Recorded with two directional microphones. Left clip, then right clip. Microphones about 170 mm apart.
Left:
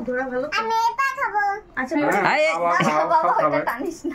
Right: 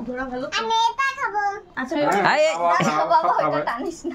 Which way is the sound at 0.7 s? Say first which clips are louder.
Right 2 dB; centre (ahead or behind).